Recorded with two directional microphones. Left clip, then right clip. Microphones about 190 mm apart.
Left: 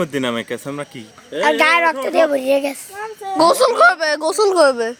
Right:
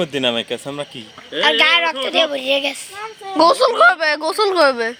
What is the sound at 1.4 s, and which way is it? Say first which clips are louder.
Speech: even; 40° left (ahead or behind).